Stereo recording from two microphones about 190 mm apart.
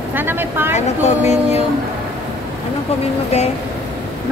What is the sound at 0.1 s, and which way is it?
Speech, 10° right (ahead or behind).